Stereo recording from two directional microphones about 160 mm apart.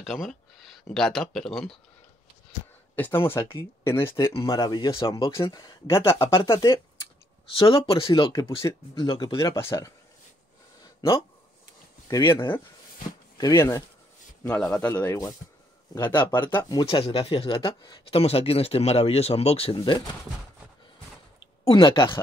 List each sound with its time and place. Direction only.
0.0 s speech: centre (ahead or behind)
3.0 s speech: 15° left (ahead or behind)
4.5 s speech: 30° left (ahead or behind)
7.5 s speech: 35° left (ahead or behind); by 9.9 s 20° left (ahead or behind)
11.0 s speech: 35° left (ahead or behind)
13.4 s speech: 20° left (ahead or behind)
14.4 s speech: 5° left (ahead or behind)
16.0 s speech: 30° left (ahead or behind)
21.6 s speech: 30° left (ahead or behind)